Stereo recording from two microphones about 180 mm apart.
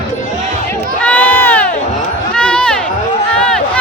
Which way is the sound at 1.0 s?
10° left (ahead or behind).